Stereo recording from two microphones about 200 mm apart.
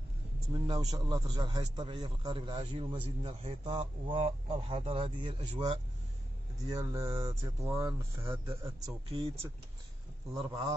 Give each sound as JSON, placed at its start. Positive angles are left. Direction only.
{"t": 0.5, "sound": "a man's voice", "side_deg": -20}
{"t": 10.3, "sound": "a man's voice", "side_deg": -25}